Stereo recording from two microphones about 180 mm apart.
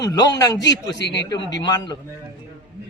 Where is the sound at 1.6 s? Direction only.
25° left (ahead or behind).